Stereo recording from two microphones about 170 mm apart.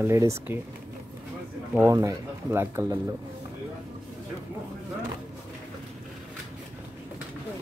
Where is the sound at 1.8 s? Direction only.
20° right (ahead or behind).